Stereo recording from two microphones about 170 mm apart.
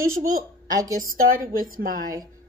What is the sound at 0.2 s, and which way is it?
A woman's voice, 55° right (ahead or behind).